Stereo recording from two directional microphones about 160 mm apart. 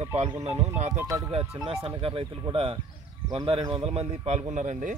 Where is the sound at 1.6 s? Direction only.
35° right (ahead or behind).